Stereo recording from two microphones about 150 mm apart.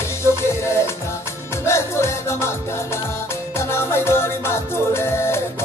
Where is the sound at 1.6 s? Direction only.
20° left (ahead or behind).